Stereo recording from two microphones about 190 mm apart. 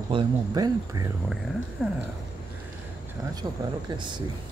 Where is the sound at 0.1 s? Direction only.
20° right (ahead or behind).